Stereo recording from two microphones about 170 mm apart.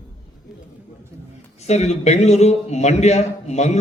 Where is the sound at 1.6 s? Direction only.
40° left (ahead or behind).